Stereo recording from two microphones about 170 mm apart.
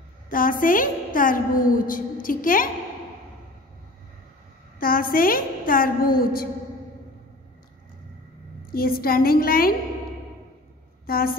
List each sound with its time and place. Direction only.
0.3 s a woman's voice: 55° left (ahead or behind)
4.7 s a woman's voice: 55° left (ahead or behind)
8.7 s a woman's voice: 60° left (ahead or behind)
11.1 s a woman's voice: 60° left (ahead or behind)